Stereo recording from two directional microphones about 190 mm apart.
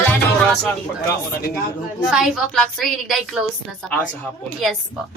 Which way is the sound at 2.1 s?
Centre (ahead or behind).